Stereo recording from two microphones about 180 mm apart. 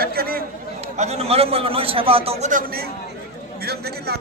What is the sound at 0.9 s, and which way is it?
A man's voice, 35° right (ahead or behind).